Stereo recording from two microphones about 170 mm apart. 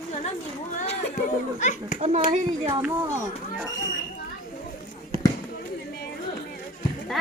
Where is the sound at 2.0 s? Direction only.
35° right (ahead or behind).